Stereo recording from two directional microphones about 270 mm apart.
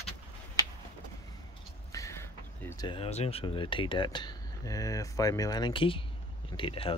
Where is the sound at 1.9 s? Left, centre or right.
Centre.